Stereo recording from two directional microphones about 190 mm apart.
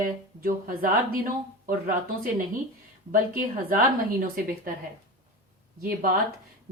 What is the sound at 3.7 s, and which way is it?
A woman's voice, 45° right (ahead or behind).